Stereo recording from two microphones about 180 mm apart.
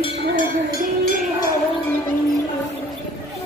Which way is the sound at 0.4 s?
60° left (ahead or behind).